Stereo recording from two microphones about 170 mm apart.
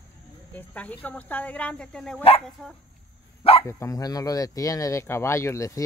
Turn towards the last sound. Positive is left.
turn(degrees=15)  # may be behind; listen again after turning